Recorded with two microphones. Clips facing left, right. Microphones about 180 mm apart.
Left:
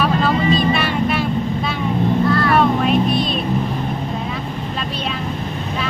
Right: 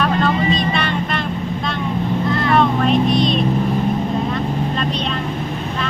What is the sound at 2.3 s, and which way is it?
Vehicle, 20° right (ahead or behind).